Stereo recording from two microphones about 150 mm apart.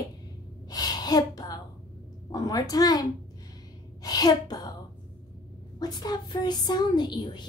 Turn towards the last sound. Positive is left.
turn(degrees=30)  # may be behind; listen again after turning